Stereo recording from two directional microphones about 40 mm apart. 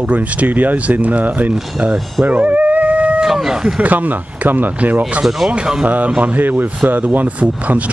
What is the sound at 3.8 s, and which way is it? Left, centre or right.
Speech, right.